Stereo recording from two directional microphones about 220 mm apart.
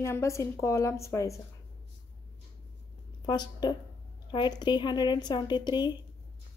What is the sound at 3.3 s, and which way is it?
A woman's voice, 20° left (ahead or behind).